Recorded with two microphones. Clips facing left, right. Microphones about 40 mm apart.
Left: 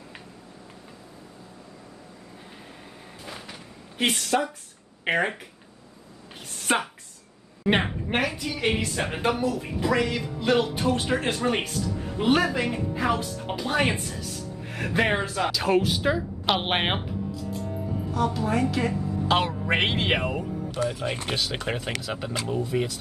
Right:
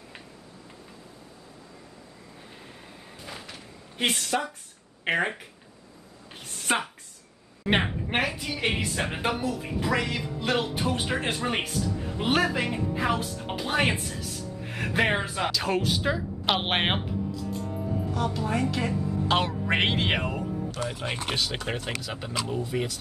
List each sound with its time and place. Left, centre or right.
3.3 s a sound: centre
5.0 s speech: centre
6.4 s a sound: centre
7.6 s speech: centre
15.5 s speech: centre
18.1 s speech: centre
20.8 s speech: right
21.7 s speech: centre